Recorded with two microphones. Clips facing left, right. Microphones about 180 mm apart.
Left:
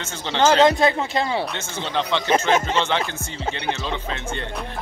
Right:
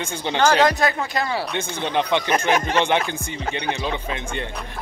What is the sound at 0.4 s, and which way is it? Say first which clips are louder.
Speech: left 2 dB; 25° left (ahead or behind).